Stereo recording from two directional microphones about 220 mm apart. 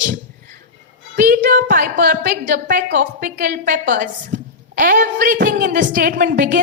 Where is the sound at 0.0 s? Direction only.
35° right (ahead or behind).